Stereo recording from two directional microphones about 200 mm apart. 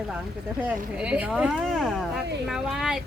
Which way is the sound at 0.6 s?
5° right (ahead or behind).